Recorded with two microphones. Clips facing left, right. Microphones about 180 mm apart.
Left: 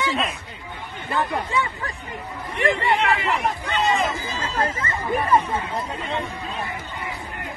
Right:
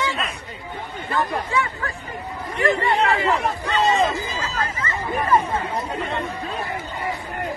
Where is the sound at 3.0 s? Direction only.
35° right (ahead or behind).